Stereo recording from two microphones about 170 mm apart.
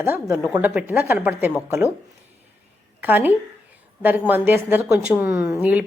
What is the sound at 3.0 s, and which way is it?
A woman's voice, 10° right (ahead or behind).